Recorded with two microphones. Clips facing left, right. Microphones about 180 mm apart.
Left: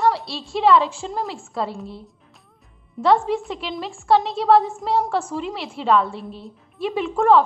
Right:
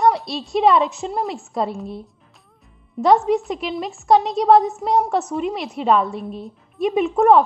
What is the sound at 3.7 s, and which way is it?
A woman's voice, 20° right (ahead or behind).